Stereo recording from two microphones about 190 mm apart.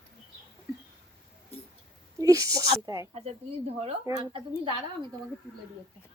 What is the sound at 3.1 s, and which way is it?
Speech, 35° right (ahead or behind).